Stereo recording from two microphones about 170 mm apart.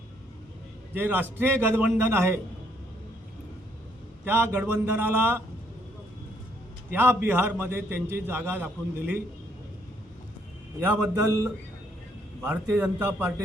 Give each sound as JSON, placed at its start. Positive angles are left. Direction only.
{"t": 0.9, "sound": "a man's voice", "side_deg": -10}
{"t": 4.2, "sound": "a man's voice", "side_deg": -10}
{"t": 6.9, "sound": "a man's voice", "side_deg": -15}
{"t": 10.8, "sound": "a man's voice", "side_deg": -15}